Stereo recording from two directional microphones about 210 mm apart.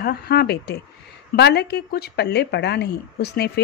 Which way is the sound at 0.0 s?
50° left (ahead or behind).